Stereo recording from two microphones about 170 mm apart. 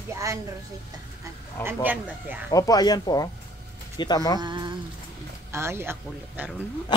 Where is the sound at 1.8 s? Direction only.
10° right (ahead or behind).